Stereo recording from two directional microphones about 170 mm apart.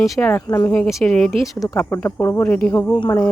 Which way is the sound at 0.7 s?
Centre (ahead or behind).